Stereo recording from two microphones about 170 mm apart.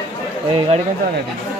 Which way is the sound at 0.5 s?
30° right (ahead or behind).